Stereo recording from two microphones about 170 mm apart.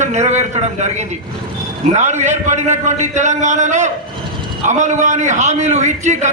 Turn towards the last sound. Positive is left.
turn(degrees=-45)  # may be behind; listen again after turning